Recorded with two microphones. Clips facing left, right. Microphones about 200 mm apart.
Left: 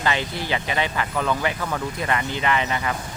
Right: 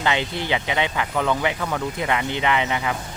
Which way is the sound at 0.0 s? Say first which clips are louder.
Right 1 dB; 20° right (ahead or behind).